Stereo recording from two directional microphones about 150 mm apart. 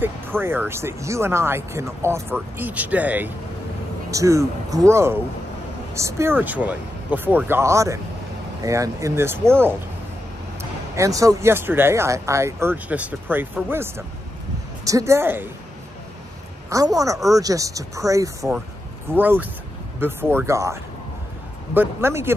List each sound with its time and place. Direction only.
0.0 s speech: 15° right (ahead or behind)
4.1 s speech: 20° right (ahead or behind)
16.6 s speech: 25° right (ahead or behind)